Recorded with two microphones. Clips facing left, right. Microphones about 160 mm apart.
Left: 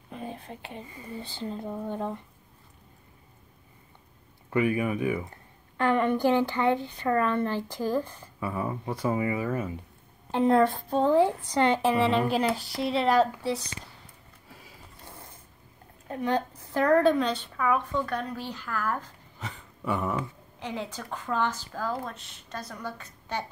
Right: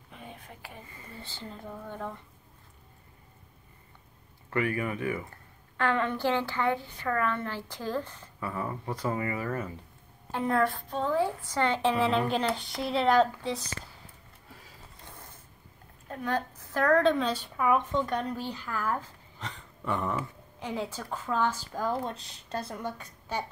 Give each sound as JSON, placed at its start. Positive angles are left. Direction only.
{"t": 0.1, "sound": "speech", "side_deg": 35}
{"t": 4.5, "sound": "a woman's voice", "side_deg": 15}
{"t": 10.3, "sound": "speech", "side_deg": 25}
{"t": 11.8, "sound": "speech", "side_deg": 0}
{"t": 16.1, "sound": "a woman's voice", "side_deg": 15}
{"t": 17.2, "sound": "speech", "side_deg": -10}
{"t": 19.4, "sound": "a sound", "side_deg": 5}
{"t": 20.2, "sound": "speech", "side_deg": -10}
{"t": 22.1, "sound": "a woman's voice", "side_deg": -35}